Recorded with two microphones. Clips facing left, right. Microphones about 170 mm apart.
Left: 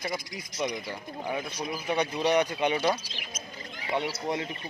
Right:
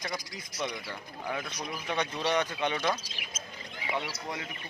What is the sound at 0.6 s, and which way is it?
Speech, 15° left (ahead or behind).